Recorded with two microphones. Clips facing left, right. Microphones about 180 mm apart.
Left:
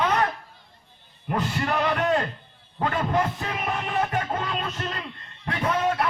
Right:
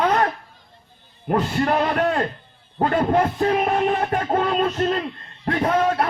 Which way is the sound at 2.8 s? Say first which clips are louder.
Right 6 dB; 50° right (ahead or behind).